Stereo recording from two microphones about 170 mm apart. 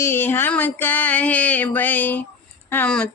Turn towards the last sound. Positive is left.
turn(degrees=10)  # may be behind; listen again after turning